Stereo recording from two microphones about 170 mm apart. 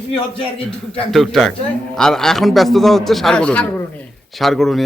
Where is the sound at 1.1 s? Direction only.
Centre (ahead or behind).